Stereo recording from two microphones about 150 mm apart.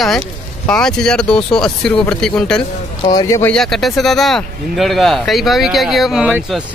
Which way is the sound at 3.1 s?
25° left (ahead or behind).